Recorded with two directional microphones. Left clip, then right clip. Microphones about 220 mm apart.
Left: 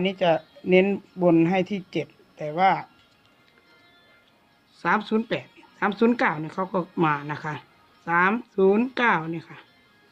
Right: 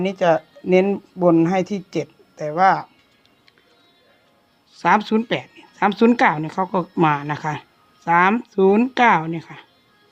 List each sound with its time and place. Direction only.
0.0 s speech: 15° right (ahead or behind)
4.7 s speech: 30° right (ahead or behind)